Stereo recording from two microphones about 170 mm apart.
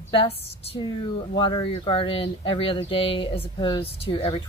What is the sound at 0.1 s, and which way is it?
Speech, 30° left (ahead or behind).